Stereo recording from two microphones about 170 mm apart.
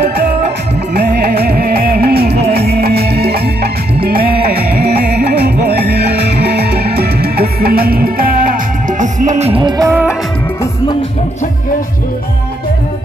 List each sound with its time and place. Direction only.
0.9 s music: 65° right (ahead or behind); by 9.6 s 40° right (ahead or behind)
9.6 s music: 25° right (ahead or behind)